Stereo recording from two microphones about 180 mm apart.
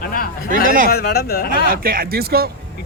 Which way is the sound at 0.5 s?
50° right (ahead or behind).